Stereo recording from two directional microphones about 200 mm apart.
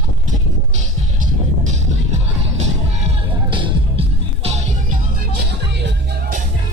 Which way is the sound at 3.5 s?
25° right (ahead or behind).